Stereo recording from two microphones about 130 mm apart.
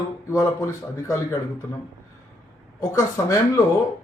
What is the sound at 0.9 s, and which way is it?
Speech, 25° left (ahead or behind).